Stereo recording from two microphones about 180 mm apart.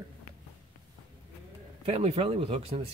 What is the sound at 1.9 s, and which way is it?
Speech, 35° right (ahead or behind).